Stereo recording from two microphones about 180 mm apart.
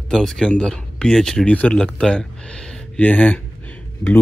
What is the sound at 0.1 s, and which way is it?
Speech, centre (ahead or behind).